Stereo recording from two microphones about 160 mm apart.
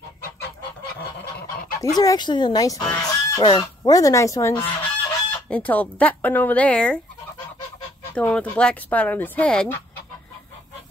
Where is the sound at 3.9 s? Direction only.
20° left (ahead or behind).